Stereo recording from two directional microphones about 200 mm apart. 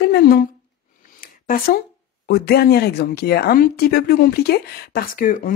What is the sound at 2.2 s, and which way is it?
Speech, 50° left (ahead or behind).